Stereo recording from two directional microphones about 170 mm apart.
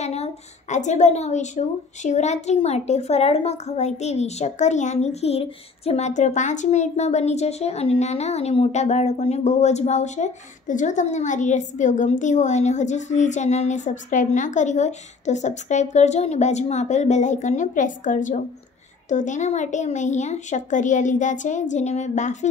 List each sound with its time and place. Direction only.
0.0 s a woman's voice: 40° left (ahead or behind)